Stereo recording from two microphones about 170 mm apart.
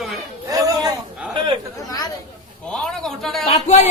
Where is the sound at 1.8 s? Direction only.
20° left (ahead or behind).